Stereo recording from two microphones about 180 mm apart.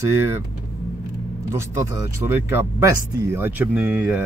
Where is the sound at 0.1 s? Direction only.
15° right (ahead or behind).